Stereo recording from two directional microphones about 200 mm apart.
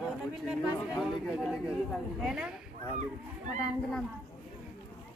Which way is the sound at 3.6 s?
5° left (ahead or behind).